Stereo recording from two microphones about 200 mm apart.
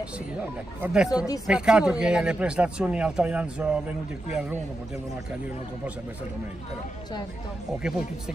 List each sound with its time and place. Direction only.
0.7 s speech: 5° right (ahead or behind)
1.1 s speech: 15° left (ahead or behind)
1.5 s speech: 5° right (ahead or behind)